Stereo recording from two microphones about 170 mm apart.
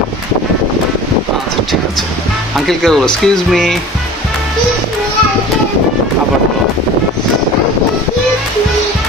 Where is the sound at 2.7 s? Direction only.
Centre (ahead or behind).